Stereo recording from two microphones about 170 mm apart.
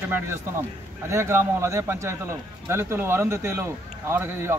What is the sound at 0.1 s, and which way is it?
Speech, 15° right (ahead or behind).